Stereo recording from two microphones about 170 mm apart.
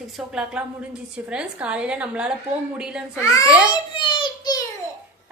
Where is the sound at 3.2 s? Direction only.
20° left (ahead or behind).